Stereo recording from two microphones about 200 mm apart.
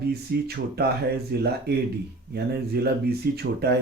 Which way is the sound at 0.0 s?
50° right (ahead or behind).